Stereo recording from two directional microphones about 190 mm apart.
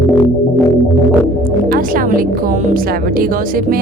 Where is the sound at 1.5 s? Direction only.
50° right (ahead or behind).